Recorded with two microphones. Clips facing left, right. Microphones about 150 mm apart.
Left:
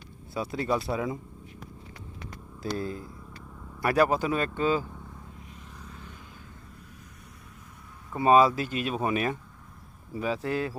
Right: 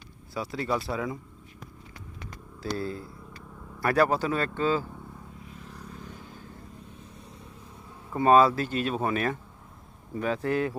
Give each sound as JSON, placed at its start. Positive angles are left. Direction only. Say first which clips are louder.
{"t": 0.3, "sound": "speech", "louder": "left 1 dB", "side_deg": 25}
{"t": 2.6, "sound": "speech", "louder": "even", "side_deg": 20}
{"t": 8.2, "sound": "speech", "louder": "right 1 dB", "side_deg": 10}